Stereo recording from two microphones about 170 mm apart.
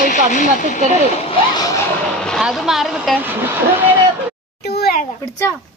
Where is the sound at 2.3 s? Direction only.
Centre (ahead or behind).